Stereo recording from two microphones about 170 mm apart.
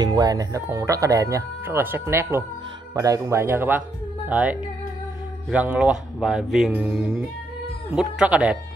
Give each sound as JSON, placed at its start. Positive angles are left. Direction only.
{"t": 0.0, "sound": "speech", "side_deg": -25}